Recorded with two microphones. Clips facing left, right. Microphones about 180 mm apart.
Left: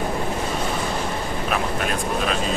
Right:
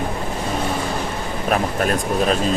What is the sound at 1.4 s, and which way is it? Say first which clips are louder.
Speech: right 6 dB; 45° right (ahead or behind).